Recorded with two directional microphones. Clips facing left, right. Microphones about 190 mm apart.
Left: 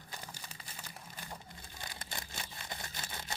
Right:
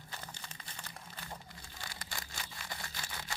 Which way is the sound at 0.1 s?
10° left (ahead or behind).